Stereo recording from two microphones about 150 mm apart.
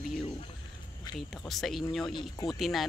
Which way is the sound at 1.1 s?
30° left (ahead or behind).